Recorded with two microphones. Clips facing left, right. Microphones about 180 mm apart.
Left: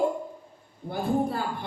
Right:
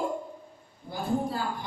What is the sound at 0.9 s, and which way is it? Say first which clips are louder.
Speech: left 3 dB; 60° left (ahead or behind).